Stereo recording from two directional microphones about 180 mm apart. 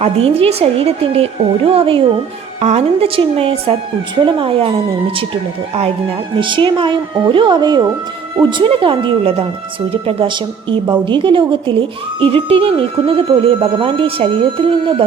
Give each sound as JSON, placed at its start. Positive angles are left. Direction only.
{"t": 0.0, "sound": "a woman's voice", "side_deg": -35}
{"t": 5.7, "sound": "speech", "side_deg": -30}